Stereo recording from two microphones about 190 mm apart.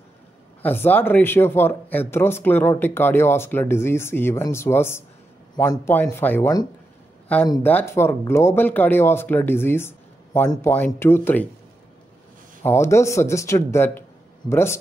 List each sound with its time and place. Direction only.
0.6 s speech: 10° left (ahead or behind)
12.6 s speech: 15° left (ahead or behind)